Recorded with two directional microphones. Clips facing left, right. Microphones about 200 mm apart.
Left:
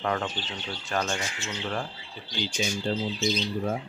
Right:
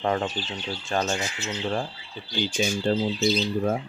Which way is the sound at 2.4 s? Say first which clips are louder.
Right 4 dB; 55° right (ahead or behind).